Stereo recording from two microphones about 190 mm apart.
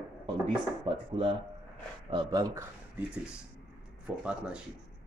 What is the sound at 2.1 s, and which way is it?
Speech, 20° right (ahead or behind).